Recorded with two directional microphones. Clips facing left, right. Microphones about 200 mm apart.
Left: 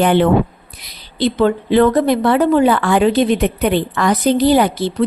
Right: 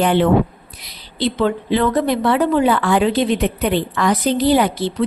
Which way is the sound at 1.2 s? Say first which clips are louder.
Left 3 dB; 50° left (ahead or behind).